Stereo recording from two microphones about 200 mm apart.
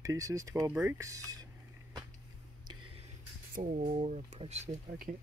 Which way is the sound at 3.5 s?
40° right (ahead or behind).